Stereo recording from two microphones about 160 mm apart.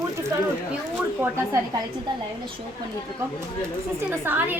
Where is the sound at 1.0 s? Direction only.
15° right (ahead or behind).